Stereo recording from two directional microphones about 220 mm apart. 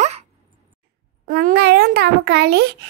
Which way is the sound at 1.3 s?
45° right (ahead or behind).